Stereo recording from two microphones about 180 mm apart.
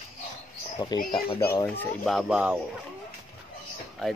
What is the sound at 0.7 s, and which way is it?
Speech, 25° left (ahead or behind).